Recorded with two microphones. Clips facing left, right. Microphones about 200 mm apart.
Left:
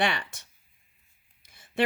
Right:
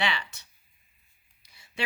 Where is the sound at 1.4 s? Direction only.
50° left (ahead or behind).